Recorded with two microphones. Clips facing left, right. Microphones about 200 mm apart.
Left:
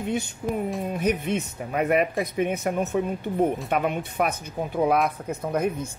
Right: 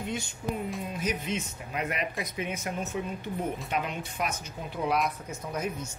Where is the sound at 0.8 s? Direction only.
60° left (ahead or behind).